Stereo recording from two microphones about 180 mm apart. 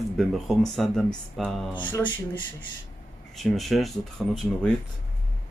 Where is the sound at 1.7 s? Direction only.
25° left (ahead or behind).